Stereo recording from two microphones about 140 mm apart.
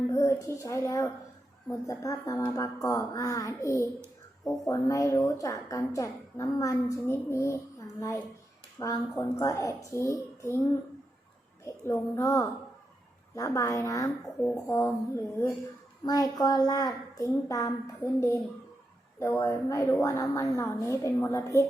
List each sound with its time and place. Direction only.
0.1 s a woman's voice: 20° left (ahead or behind)
11.6 s a woman's voice: 20° left (ahead or behind)